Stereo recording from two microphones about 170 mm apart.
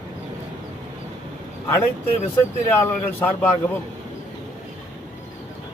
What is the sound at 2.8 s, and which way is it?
Speech, 15° left (ahead or behind).